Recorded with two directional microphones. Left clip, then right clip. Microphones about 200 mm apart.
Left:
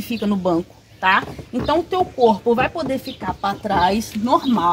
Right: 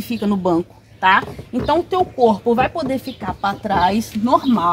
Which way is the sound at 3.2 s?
20° left (ahead or behind).